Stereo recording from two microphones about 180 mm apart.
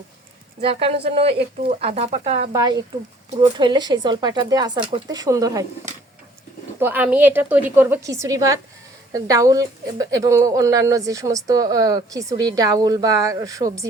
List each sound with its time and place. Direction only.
0.6 s speech: 30° right (ahead or behind)
2.5 s a woman's voice: 20° right (ahead or behind)
6.7 s a woman's voice: 10° right (ahead or behind)